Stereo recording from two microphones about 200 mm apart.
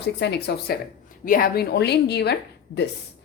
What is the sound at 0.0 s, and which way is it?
Speech, 60° left (ahead or behind).